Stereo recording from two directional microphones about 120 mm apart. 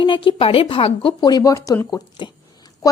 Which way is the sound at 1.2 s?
35° left (ahead or behind).